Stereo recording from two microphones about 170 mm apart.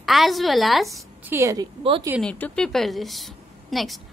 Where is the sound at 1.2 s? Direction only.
15° right (ahead or behind).